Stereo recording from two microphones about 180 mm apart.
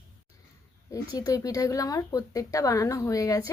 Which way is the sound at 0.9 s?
20° left (ahead or behind).